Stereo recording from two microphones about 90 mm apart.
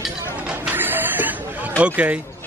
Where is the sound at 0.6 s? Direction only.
20° right (ahead or behind).